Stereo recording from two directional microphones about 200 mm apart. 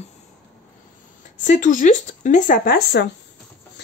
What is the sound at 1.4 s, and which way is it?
A woman's voice, 40° left (ahead or behind).